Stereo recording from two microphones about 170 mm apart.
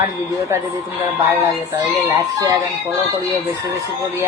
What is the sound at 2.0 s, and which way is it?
Speech, 20° right (ahead or behind).